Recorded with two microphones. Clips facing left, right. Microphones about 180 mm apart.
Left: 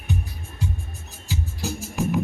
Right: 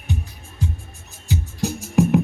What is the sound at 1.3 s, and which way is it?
Music, 60° right (ahead or behind).